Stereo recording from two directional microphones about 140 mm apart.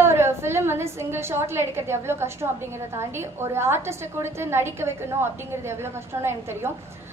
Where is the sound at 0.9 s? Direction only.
20° right (ahead or behind).